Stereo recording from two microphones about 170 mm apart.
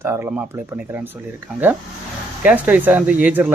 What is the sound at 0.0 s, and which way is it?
Speech, 15° right (ahead or behind).